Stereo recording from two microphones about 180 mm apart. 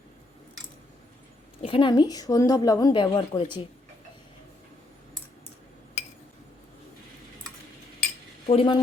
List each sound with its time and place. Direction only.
1.6 s a woman's voice: 30° left (ahead or behind)
8.4 s a woman's voice: 30° left (ahead or behind)